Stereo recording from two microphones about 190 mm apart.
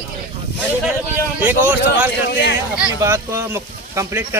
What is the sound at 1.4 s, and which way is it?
Speech, 10° right (ahead or behind).